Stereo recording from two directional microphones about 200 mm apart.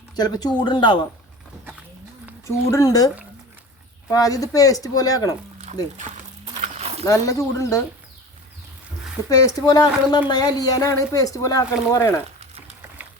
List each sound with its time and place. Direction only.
0.2 s a woman's voice: 20° left (ahead or behind)
2.6 s a woman's voice: 15° left (ahead or behind)
4.1 s speech: 15° left (ahead or behind)
6.0 s a sound: 30° right (ahead or behind)
7.0 s speech: 15° left (ahead or behind)
9.3 s a woman's voice: 15° left (ahead or behind)